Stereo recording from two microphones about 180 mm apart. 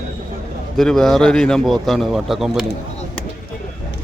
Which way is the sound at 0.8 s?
Centre (ahead or behind).